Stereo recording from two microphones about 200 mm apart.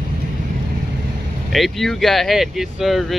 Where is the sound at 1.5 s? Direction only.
Centre (ahead or behind).